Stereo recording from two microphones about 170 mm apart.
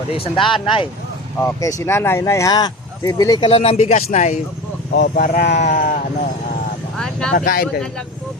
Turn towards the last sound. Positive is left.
turn(degrees=60)  # may be behind; listen again after turning